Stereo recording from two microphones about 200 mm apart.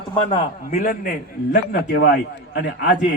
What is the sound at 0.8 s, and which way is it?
Speech, 50° left (ahead or behind).